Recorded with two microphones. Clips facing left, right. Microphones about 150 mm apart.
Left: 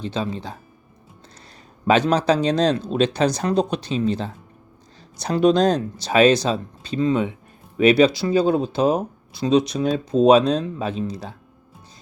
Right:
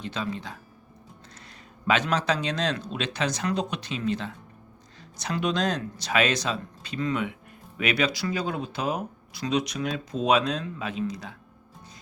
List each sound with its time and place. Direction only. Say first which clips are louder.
0.0 s speech: left 6 dB; 30° left (ahead or behind)
1.9 s speech: left 7 dB; 35° left (ahead or behind)